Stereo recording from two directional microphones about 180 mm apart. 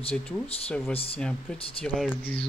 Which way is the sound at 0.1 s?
5° left (ahead or behind).